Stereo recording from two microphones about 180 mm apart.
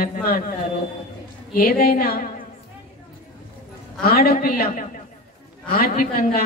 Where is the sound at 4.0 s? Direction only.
60° left (ahead or behind).